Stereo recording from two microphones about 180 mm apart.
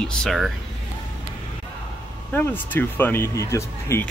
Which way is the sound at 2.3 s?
10° left (ahead or behind).